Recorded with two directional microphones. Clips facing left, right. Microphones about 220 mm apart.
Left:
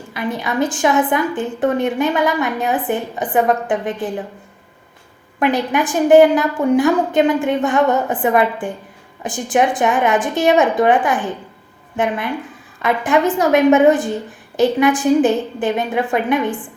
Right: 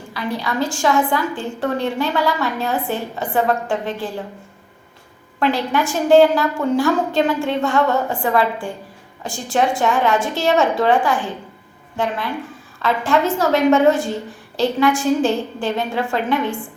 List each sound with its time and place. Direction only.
0.1 s a woman's voice: 20° left (ahead or behind)
5.4 s a woman's voice: 20° left (ahead or behind)